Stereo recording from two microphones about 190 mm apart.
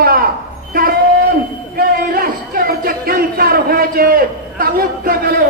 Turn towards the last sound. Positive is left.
turn(degrees=-50)  # may be behind; listen again after turning